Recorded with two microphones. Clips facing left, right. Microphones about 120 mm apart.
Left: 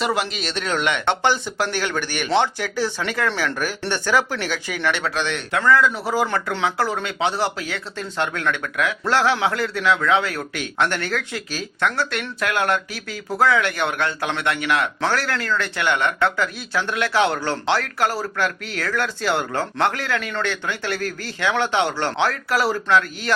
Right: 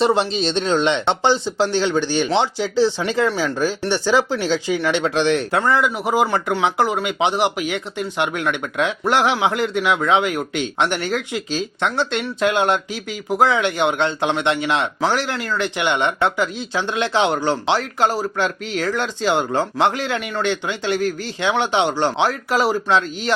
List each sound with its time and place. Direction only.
0.0 s speech: 25° right (ahead or behind)
5.1 s speech: 30° right (ahead or behind)